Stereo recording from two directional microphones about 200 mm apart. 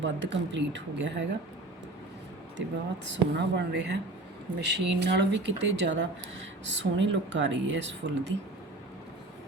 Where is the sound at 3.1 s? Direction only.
60° right (ahead or behind).